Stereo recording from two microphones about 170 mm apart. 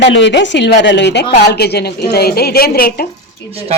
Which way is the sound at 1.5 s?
70° left (ahead or behind).